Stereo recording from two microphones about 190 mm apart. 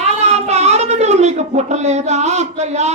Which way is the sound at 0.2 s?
35° right (ahead or behind).